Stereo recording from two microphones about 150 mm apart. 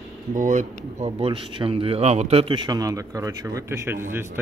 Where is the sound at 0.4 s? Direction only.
55° right (ahead or behind).